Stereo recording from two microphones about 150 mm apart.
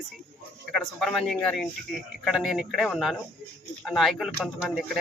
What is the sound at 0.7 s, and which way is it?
Speech, 5° left (ahead or behind).